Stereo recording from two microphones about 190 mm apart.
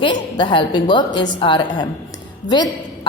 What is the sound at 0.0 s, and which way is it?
A woman's voice, 25° left (ahead or behind).